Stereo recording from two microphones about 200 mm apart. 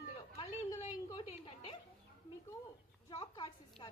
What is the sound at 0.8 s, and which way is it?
Speech, 30° left (ahead or behind).